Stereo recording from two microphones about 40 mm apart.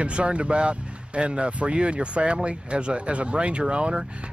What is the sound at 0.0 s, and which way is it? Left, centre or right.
Speech, right.